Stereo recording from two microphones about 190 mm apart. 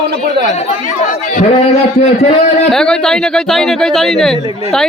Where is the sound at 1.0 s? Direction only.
40° left (ahead or behind).